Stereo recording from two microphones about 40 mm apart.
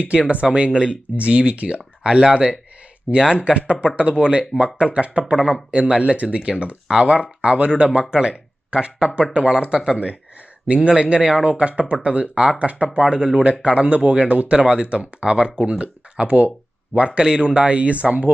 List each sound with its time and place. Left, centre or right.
0.0 s speech: right
8.1 s speech: right
11.4 s speech: right
13.0 s speech: centre
13.4 s speech: right